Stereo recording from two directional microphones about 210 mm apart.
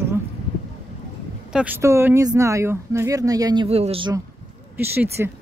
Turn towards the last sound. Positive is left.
turn(degrees=-10)  # may be behind; listen again after turning